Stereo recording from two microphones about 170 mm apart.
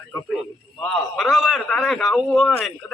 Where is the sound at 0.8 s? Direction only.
5° left (ahead or behind).